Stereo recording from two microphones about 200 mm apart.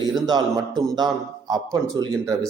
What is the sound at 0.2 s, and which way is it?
A man's voice, 20° right (ahead or behind).